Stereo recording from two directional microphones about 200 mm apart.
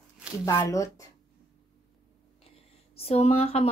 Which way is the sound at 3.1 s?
30° left (ahead or behind).